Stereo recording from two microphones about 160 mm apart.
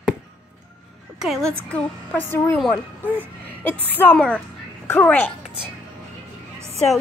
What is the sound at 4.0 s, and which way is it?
A woman's voice, 10° left (ahead or behind).